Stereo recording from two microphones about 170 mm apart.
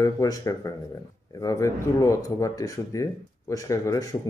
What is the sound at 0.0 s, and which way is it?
A man's voice, 20° left (ahead or behind).